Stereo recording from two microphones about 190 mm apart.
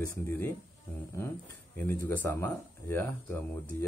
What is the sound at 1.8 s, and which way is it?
Speech, 10° left (ahead or behind).